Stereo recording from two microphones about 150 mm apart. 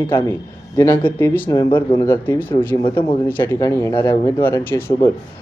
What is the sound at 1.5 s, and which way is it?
Speech, 25° left (ahead or behind).